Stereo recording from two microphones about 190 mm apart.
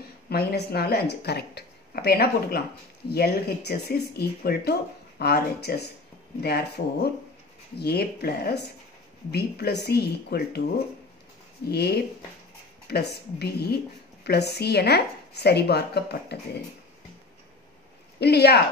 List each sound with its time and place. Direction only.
0.3 s speech: 55° left (ahead or behind)
11.7 s speech: 60° left (ahead or behind)
18.2 s speech: 60° left (ahead or behind)